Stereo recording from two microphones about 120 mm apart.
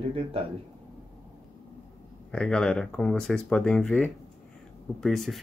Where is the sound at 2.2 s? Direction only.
5° left (ahead or behind).